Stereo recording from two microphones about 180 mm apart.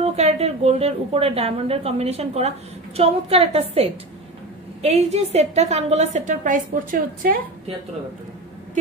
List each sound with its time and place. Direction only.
0.0 s a woman's voice: 35° right (ahead or behind)